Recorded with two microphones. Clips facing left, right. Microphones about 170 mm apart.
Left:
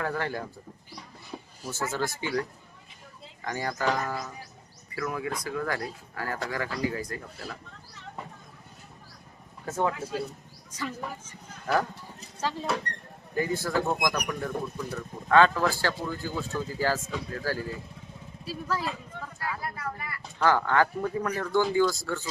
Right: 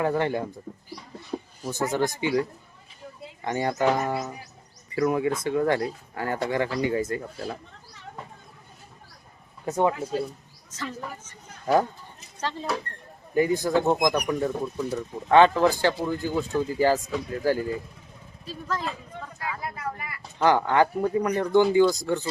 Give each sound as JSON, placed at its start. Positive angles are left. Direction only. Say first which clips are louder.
{"t": 0.0, "sound": "speech", "louder": "right 6 dB", "side_deg": -20}
{"t": 1.7, "sound": "speech", "louder": "right 6 dB", "side_deg": -15}
{"t": 3.4, "sound": "speech", "louder": "right 5 dB", "side_deg": -25}
{"t": 9.6, "sound": "speech", "louder": "right 5 dB", "side_deg": -15}
{"t": 10.7, "sound": "a woman's voice", "louder": "even", "side_deg": 10}
{"t": 11.6, "sound": "speech", "louder": "right 5 dB", "side_deg": -25}
{"t": 12.4, "sound": "speech", "louder": "even", "side_deg": 5}
{"t": 13.3, "sound": "speech", "louder": "right 6 dB", "side_deg": -15}
{"t": 18.4, "sound": "speech", "louder": "even", "side_deg": 10}
{"t": 19.4, "sound": "a sound", "louder": "right 1 dB", "side_deg": -15}
{"t": 21.3, "sound": "speech", "louder": "right 6 dB", "side_deg": -20}